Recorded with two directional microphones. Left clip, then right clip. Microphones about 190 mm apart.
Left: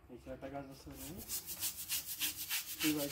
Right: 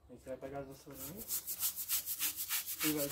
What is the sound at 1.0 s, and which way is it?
Rub, 15° right (ahead or behind).